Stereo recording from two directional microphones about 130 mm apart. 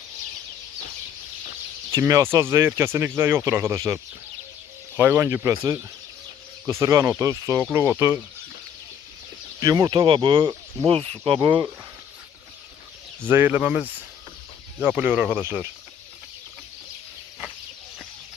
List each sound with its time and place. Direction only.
1.9 s speech: 25° right (ahead or behind)
9.6 s speech: 25° right (ahead or behind)
10.0 s speech: 40° right (ahead or behind)
13.2 s speech: 15° right (ahead or behind)